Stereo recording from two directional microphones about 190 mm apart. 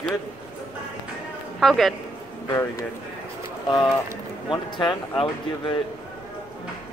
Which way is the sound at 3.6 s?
25° left (ahead or behind).